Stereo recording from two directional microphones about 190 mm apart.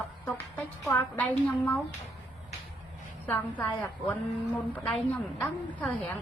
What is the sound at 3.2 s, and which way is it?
A woman's voice, 10° left (ahead or behind).